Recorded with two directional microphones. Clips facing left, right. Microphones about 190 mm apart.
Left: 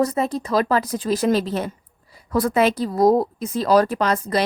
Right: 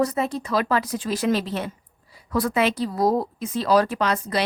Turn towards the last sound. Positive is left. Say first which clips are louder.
# left 3 dB
turn(degrees=40)  # may be behind; listen again after turning